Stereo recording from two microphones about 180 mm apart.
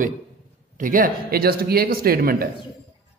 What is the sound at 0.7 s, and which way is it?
A man's voice, 50° right (ahead or behind).